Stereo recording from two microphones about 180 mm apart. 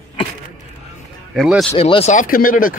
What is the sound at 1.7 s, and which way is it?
Speech, 35° left (ahead or behind).